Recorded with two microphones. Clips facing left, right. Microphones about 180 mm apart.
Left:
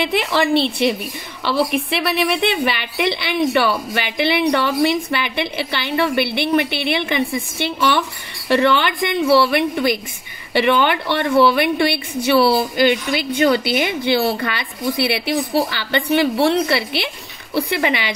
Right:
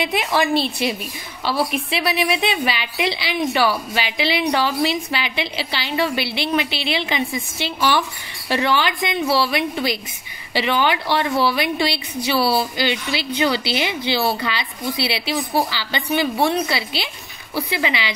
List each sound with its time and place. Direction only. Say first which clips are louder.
0.1 s a woman's voice: left 2 dB; 65° left (ahead or behind)